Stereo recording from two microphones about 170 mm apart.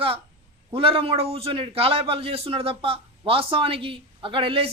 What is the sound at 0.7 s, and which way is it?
A man's voice, 35° right (ahead or behind).